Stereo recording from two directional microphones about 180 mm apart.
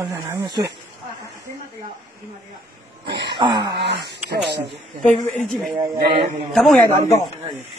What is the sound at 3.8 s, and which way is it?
Speech, 70° right (ahead or behind).